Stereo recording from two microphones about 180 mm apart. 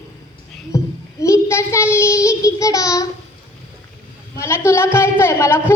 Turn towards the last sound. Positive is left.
turn(degrees=15)  # may be behind; listen again after turning